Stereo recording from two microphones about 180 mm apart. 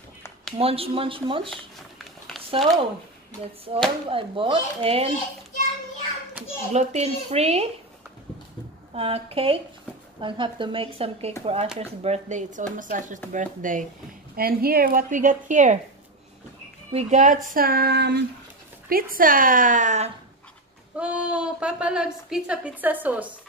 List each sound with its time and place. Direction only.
0.6 s a child's voice: 30° right (ahead or behind)
1.5 s a sound: centre (ahead or behind)
3.7 s a child's voice: 35° right (ahead or behind)
6.4 s a child's voice: 40° right (ahead or behind)
8.9 s a child's voice: 30° right (ahead or behind)
14.3 s a woman's voice: 55° right (ahead or behind)
16.9 s speech: 40° right (ahead or behind); by 18.2 s 65° right (ahead or behind)
18.9 s a woman's voice: 55° right (ahead or behind)
21.0 s a woman's voice: 5° right (ahead or behind)